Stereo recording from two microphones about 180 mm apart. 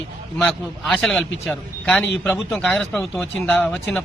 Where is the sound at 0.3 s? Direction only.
Centre (ahead or behind).